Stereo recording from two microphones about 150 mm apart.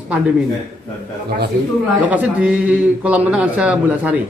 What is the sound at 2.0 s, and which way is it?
A man's voice, 10° right (ahead or behind).